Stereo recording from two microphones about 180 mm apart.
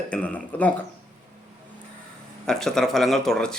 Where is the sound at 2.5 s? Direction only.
Centre (ahead or behind).